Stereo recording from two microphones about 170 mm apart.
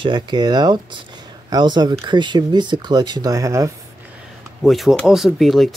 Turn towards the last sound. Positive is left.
turn(degrees=0)  # may be behind; listen again after turning